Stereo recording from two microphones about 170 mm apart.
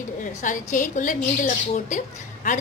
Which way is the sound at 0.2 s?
50° left (ahead or behind).